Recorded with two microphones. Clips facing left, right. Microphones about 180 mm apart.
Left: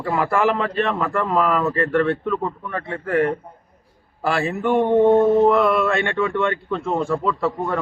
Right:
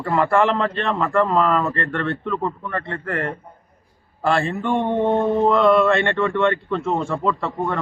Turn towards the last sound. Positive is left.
turn(degrees=0)  # may be behind; listen again after turning